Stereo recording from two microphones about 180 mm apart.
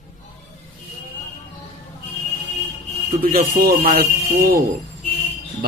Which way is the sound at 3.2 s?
55° right (ahead or behind).